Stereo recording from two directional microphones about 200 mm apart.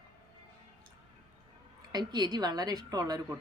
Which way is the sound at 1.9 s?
20° right (ahead or behind).